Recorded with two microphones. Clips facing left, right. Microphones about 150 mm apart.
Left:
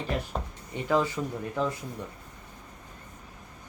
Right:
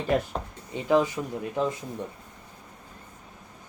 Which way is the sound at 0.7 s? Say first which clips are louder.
Right 3 dB; 15° right (ahead or behind).